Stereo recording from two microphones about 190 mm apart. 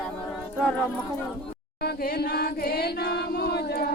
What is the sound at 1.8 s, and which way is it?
Chant, 55° left (ahead or behind).